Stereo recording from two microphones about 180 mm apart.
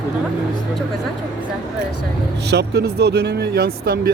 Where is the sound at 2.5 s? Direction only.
70° right (ahead or behind).